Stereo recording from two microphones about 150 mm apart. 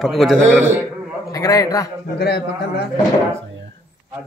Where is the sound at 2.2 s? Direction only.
90° left.